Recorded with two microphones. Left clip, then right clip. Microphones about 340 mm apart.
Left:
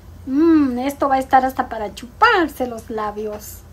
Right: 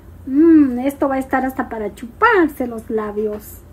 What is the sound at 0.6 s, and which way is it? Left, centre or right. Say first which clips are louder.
Speech: right 3 dB; centre.